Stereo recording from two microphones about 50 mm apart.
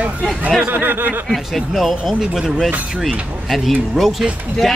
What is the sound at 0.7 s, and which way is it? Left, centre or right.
Speech, right.